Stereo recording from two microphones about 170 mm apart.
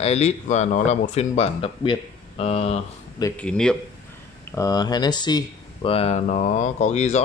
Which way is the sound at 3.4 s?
5° left (ahead or behind).